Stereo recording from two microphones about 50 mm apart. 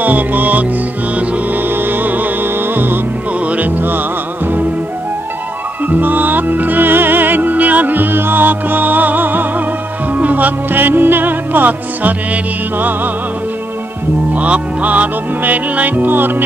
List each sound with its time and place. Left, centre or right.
0.0 s music: right
1.7 s music: right
5.9 s music: right
14.3 s music: right